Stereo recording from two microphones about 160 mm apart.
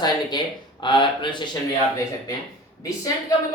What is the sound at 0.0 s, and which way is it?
Speech, 25° left (ahead or behind).